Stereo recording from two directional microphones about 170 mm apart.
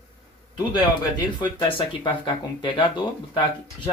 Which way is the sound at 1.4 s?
30° left (ahead or behind).